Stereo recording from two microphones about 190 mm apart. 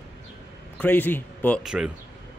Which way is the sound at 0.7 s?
10° left (ahead or behind).